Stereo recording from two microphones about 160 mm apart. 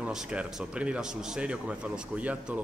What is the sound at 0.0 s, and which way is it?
A man's voice, 5° right (ahead or behind).